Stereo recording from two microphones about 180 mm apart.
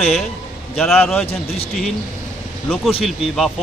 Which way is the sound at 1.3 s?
35° left (ahead or behind).